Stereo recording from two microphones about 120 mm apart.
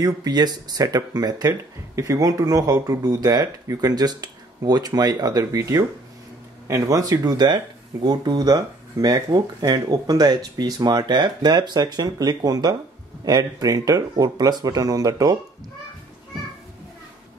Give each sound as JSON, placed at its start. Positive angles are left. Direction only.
{"t": 0.0, "sound": "speech", "side_deg": -35}